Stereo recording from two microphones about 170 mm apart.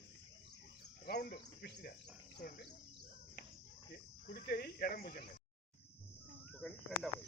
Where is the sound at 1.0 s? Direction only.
65° left (ahead or behind).